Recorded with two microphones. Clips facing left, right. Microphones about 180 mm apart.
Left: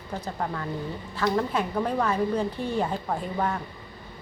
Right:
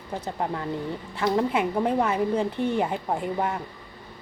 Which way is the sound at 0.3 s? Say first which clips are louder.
Right 3 dB; 20° right (ahead or behind).